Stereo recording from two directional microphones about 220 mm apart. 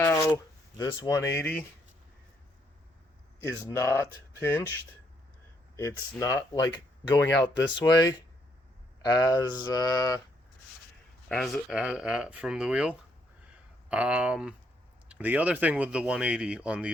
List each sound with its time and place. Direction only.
0.8 s speech: 15° left (ahead or behind)
3.4 s speech: 10° left (ahead or behind)
5.7 s speech: 15° left (ahead or behind)
11.3 s speech: centre (ahead or behind)